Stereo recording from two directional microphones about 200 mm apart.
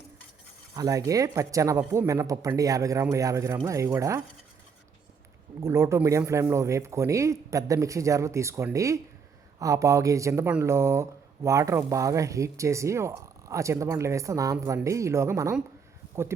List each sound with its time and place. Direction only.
0.8 s speech: 15° right (ahead or behind)
5.5 s speech: 15° right (ahead or behind)